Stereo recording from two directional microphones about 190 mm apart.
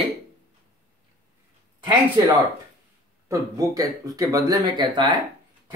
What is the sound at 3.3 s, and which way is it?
A man's voice, 15° right (ahead or behind).